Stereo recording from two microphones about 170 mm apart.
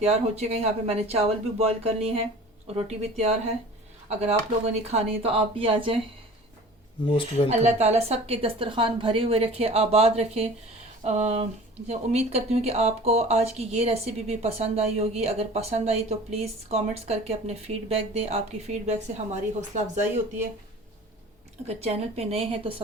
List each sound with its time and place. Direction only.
0.0 s speech: 40° right (ahead or behind)
7.6 s speech: 40° right (ahead or behind)
21.7 s speech: 40° right (ahead or behind)